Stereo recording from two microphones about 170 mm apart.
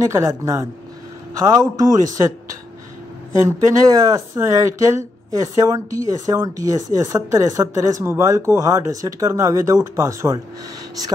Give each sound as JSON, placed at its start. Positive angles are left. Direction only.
{"t": 0.0, "sound": "speech", "side_deg": -20}
{"t": 3.4, "sound": "speech", "side_deg": -20}